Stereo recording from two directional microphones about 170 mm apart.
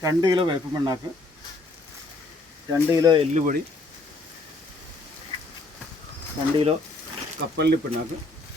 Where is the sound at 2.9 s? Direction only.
20° right (ahead or behind).